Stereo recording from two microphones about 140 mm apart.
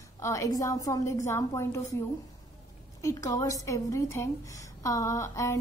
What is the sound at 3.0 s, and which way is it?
A woman's voice, 25° left (ahead or behind).